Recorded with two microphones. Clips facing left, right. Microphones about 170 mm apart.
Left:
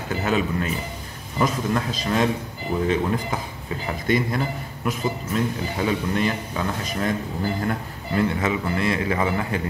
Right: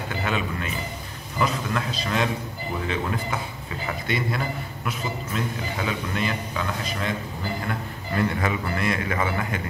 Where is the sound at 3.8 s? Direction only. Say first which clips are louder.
Left 5 dB; 40° left (ahead or behind).